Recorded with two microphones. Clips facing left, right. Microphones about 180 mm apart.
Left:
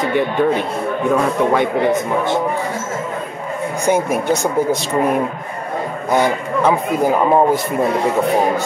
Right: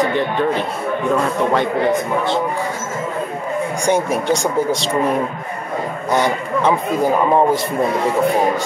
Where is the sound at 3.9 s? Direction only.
5° left (ahead or behind).